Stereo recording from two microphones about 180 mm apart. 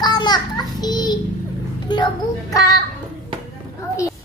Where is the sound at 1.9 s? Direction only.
25° left (ahead or behind).